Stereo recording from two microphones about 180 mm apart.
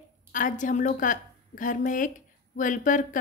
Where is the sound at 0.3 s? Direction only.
45° left (ahead or behind).